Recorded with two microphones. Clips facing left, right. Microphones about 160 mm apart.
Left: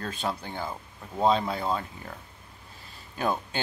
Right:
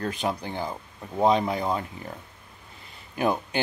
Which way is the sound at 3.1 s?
15° right (ahead or behind).